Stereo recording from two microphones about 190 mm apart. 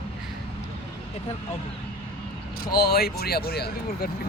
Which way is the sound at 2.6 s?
55° left (ahead or behind).